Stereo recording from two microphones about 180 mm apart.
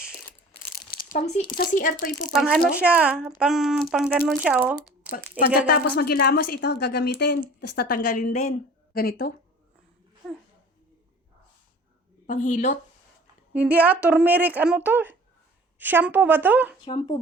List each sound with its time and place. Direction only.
0.7 s crumpling: 55° left (ahead or behind)
1.5 s speech: 50° left (ahead or behind)
2.3 s speech: centre (ahead or behind)
5.6 s a woman's voice: 60° left (ahead or behind)
10.2 s a sound: 5° left (ahead or behind)
12.2 s speech: 45° left (ahead or behind)
13.5 s speech: 10° right (ahead or behind)
16.8 s speech: 25° left (ahead or behind)